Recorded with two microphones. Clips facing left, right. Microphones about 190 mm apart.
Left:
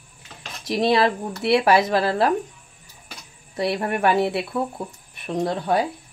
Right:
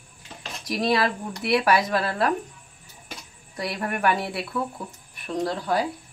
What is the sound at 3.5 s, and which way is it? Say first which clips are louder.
A woman's voice: left 6 dB; 25° left (ahead or behind).